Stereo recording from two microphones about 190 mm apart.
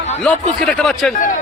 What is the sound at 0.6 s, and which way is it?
Speech, centre (ahead or behind).